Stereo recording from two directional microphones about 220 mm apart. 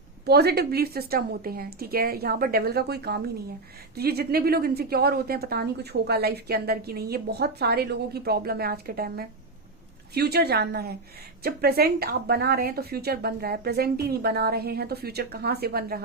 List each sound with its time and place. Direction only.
0.3 s a woman's voice: 45° right (ahead or behind)